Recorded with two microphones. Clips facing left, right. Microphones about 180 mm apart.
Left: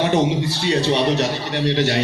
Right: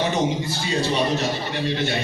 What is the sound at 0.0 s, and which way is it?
A man's voice, 70° left (ahead or behind).